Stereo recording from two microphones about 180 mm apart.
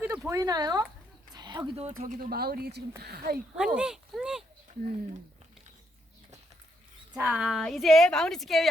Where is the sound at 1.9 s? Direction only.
45° right (ahead or behind).